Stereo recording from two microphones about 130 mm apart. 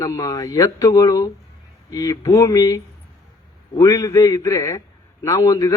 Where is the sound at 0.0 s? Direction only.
25° left (ahead or behind).